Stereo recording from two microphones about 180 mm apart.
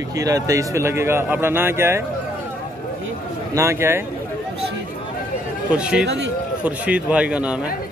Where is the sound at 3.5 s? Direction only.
15° right (ahead or behind).